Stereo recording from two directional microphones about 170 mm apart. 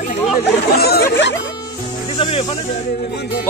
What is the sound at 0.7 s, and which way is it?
Speech, 65° left (ahead or behind).